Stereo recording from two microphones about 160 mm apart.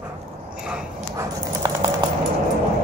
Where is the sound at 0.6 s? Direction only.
5° right (ahead or behind).